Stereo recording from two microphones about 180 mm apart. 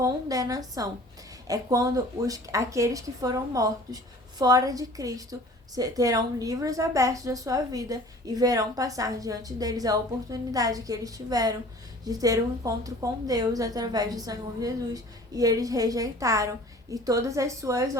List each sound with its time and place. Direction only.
0.0 s speech: 20° right (ahead or behind)